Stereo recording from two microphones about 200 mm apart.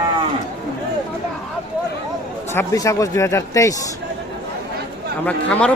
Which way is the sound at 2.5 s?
15° left (ahead or behind).